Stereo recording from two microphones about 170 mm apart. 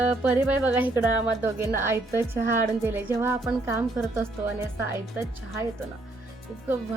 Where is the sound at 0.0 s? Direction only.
10° right (ahead or behind).